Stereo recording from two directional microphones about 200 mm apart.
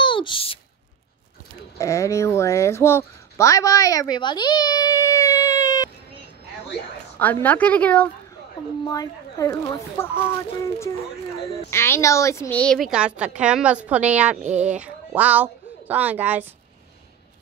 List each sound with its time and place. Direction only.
0.0 s a sound: 25° left (ahead or behind)
1.8 s speech: 15° left (ahead or behind)
7.2 s speech: 10° left (ahead or behind)
8.8 s speech: 20° left (ahead or behind); by 16.4 s 10° right (ahead or behind)